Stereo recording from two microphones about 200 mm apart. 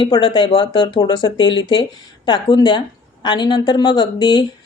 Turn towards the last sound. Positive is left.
turn(degrees=20)  # may be behind; listen again after turning